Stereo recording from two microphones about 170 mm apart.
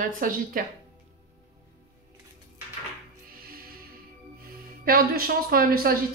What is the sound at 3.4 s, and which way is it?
Music, 60° right (ahead or behind).